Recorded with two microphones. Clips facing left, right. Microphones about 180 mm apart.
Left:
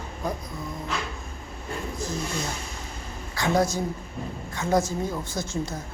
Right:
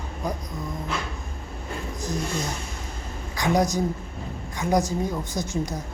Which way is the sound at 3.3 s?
15° right (ahead or behind).